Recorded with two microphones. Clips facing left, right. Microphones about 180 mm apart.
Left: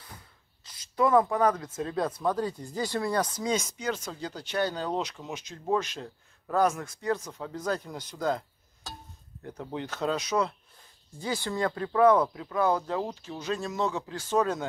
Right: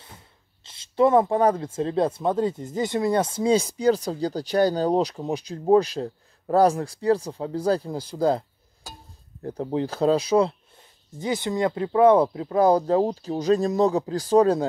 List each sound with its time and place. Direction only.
0.7 s speech: 25° right (ahead or behind)